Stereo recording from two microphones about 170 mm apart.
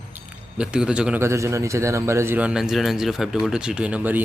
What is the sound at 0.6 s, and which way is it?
A man's voice, 5° right (ahead or behind).